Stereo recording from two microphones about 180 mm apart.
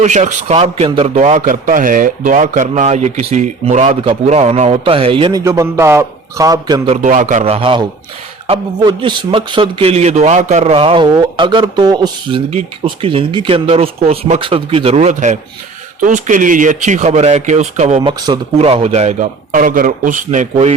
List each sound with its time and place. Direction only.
0.0 s speech: 40° right (ahead or behind)
5.4 s a man's voice: 15° right (ahead or behind)
6.9 s a man's voice: 40° right (ahead or behind); by 12.4 s 25° right (ahead or behind)
12.5 s speech: 35° right (ahead or behind)